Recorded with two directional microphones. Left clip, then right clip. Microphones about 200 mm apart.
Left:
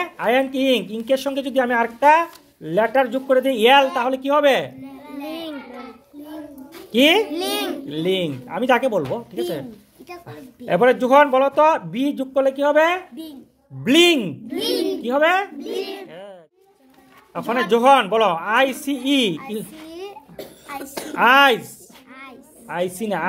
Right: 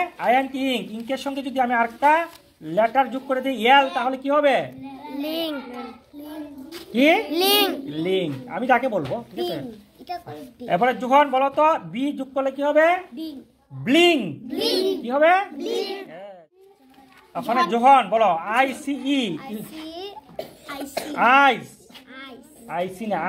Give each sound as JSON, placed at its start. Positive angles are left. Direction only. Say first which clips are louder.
{"t": 0.0, "sound": "speech", "louder": "left 1 dB", "side_deg": 55}
{"t": 5.2, "sound": "child singing", "louder": "right 4 dB", "side_deg": -55}
{"t": 6.9, "sound": "speech", "louder": "left 3 dB", "side_deg": 40}
{"t": 7.3, "sound": "a child's voice", "louder": "right 5 dB", "side_deg": -55}
{"t": 7.9, "sound": "speech", "louder": "left 2 dB", "side_deg": 45}
{"t": 10.2, "sound": "speech", "louder": "left 1 dB", "side_deg": 60}
{"t": 15.0, "sound": "a woman's voice", "louder": "even", "side_deg": 35}
{"t": 16.1, "sound": "a sound", "louder": "left 1 dB", "side_deg": 50}
{"t": 17.3, "sound": "speech", "louder": "left 2 dB", "side_deg": 55}
{"t": 20.6, "sound": "a child's voice", "louder": "even", "side_deg": 45}
{"t": 22.7, "sound": "a woman's voice", "louder": "left 2 dB", "side_deg": 40}